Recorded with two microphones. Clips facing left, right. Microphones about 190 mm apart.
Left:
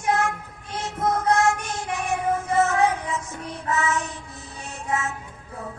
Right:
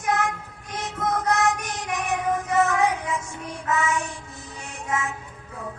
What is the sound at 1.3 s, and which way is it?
Child singing, 20° right (ahead or behind).